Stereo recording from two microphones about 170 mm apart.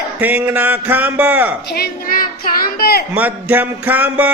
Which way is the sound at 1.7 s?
60° left (ahead or behind).